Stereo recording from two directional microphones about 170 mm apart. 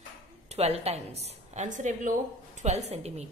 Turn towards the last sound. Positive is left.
turn(degrees=-40)  # may be behind; listen again after turning